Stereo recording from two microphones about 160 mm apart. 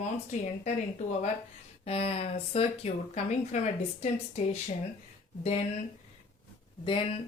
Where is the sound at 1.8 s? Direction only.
40° left (ahead or behind).